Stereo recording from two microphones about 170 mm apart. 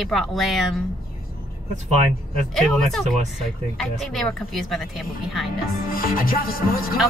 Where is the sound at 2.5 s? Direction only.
5° left (ahead or behind).